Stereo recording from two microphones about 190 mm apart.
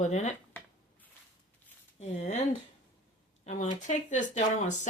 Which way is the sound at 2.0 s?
35° left (ahead or behind).